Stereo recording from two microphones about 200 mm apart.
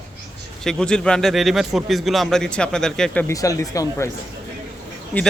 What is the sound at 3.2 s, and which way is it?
Speech, 15° left (ahead or behind).